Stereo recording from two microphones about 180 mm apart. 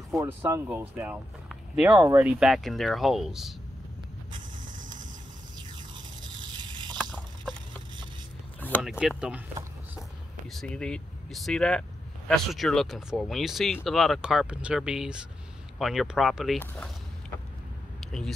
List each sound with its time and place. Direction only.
0.1 s speech: 15° right (ahead or behind)
4.6 s vehicle: 45° right (ahead or behind)
6.5 s a sound: 25° right (ahead or behind)
8.5 s a sound: 10° left (ahead or behind)
10.5 s speech: 5° left (ahead or behind)
18.0 s speech: centre (ahead or behind)